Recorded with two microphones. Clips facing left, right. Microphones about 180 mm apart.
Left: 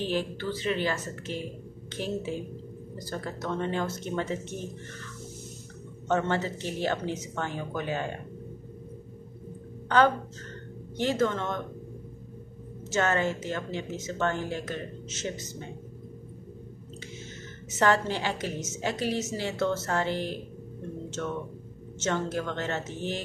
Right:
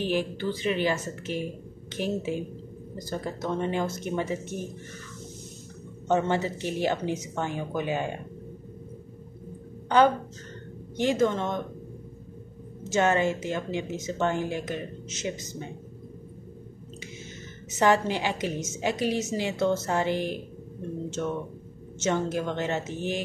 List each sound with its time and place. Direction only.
0.0 s a woman's voice: 15° right (ahead or behind)
6.0 s a woman's voice: 15° right (ahead or behind)
9.8 s a woman's voice: 15° right (ahead or behind)
12.9 s a woman's voice: 15° right (ahead or behind)
17.7 s a woman's voice: 15° right (ahead or behind)